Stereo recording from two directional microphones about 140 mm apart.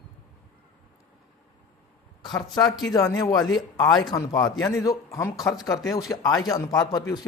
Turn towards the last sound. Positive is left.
turn(degrees=30)  # may be behind; listen again after turning